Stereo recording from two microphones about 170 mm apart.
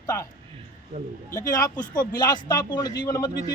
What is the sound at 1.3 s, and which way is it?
Speech, 20° left (ahead or behind).